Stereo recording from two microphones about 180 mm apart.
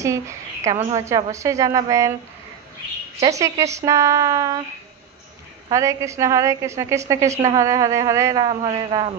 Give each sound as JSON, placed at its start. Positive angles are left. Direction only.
{"t": 0.0, "sound": "a woman's voice", "side_deg": -15}
{"t": 3.2, "sound": "a woman's voice", "side_deg": -15}
{"t": 5.7, "sound": "a woman's voice", "side_deg": -15}